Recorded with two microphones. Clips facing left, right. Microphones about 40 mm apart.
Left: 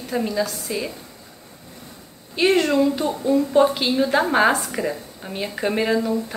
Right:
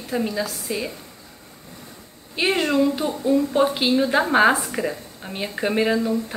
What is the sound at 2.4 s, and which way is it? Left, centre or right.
A woman's voice, centre.